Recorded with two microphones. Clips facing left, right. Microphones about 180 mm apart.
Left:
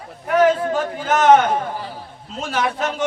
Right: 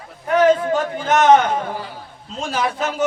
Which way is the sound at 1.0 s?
5° left (ahead or behind).